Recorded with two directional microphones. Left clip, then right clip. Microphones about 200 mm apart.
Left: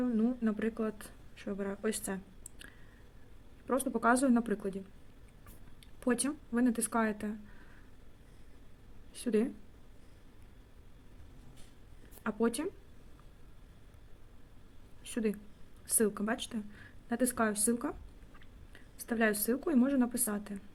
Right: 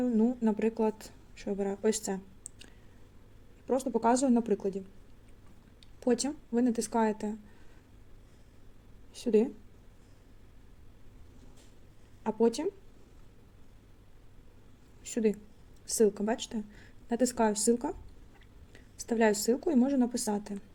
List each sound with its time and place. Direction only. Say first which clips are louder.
0.2 s a woman's voice: right 5 dB; 15° right (ahead or behind)
3.7 s speech: right 2 dB; 5° right (ahead or behind)
6.0 s a woman's voice: right 4 dB; 5° right (ahead or behind)
9.1 s a woman's voice: right 5 dB; 5° right (ahead or behind)
12.2 s a woman's voice: right 5 dB; 5° right (ahead or behind)
15.0 s a woman's voice: right 6 dB; 10° right (ahead or behind)
18.7 s a sound: right 5 dB; 15° right (ahead or behind)
19.6 s a woman's voice: right 2 dB; 10° right (ahead or behind)